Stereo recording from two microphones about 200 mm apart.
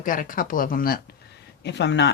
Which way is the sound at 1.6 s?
60° left (ahead or behind).